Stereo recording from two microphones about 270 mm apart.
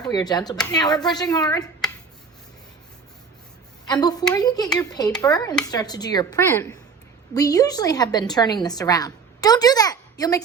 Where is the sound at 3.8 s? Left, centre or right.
Centre.